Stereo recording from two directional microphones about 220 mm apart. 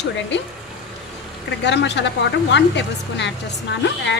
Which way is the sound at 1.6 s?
50° left (ahead or behind).